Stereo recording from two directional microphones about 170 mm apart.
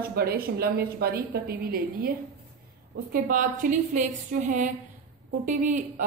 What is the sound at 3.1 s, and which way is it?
A woman's voice, 55° right (ahead or behind).